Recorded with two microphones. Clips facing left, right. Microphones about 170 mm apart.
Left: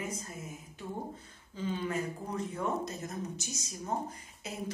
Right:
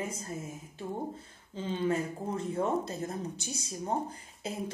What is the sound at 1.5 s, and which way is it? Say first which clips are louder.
A woman's voice: right 3 dB; 25° right (ahead or behind).